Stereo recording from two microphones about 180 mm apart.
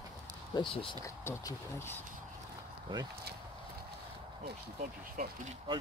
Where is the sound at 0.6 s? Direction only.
30° left (ahead or behind).